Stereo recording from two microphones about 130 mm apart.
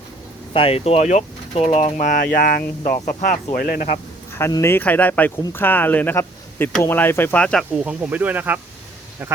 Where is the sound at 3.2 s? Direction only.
90° left.